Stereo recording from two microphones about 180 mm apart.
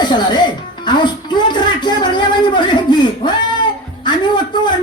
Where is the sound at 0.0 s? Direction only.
25° left (ahead or behind).